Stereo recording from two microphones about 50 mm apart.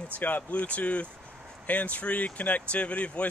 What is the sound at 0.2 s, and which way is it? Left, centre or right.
Speech, left.